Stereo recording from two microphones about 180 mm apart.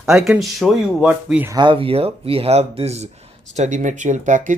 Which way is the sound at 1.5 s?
30° right (ahead or behind).